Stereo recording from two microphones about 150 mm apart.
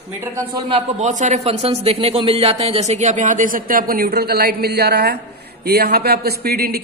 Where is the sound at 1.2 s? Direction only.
50° right (ahead or behind).